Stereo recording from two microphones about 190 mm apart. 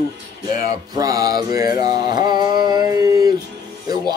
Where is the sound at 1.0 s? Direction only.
20° right (ahead or behind).